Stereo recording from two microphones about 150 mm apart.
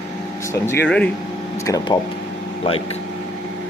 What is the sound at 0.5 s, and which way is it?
Speech, 15° left (ahead or behind).